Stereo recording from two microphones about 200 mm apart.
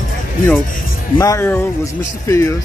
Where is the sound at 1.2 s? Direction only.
15° left (ahead or behind).